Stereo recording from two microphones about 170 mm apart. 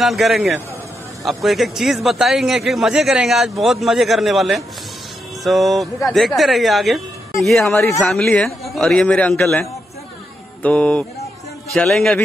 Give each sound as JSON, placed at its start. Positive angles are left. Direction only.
{"t": 0.0, "sound": "a man's voice", "side_deg": 0}
{"t": 7.7, "sound": "a man's voice", "side_deg": 15}
{"t": 8.1, "sound": "a man's voice", "side_deg": 5}
{"t": 10.6, "sound": "a man's voice", "side_deg": 5}